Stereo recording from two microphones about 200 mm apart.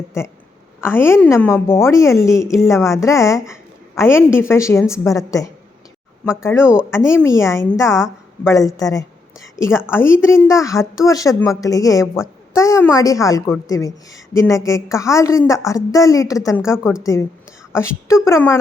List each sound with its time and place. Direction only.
0.8 s a woman's voice: 10° left (ahead or behind)